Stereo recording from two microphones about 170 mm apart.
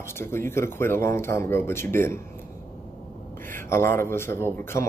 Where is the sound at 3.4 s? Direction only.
15° left (ahead or behind).